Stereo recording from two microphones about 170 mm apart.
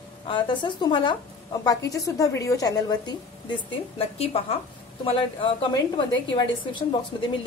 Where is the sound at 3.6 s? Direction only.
35° left (ahead or behind).